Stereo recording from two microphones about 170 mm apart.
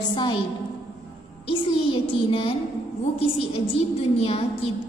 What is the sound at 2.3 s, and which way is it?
A woman's voice, 35° left (ahead or behind).